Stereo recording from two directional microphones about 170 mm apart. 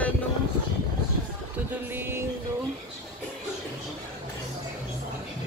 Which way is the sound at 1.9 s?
15° right (ahead or behind).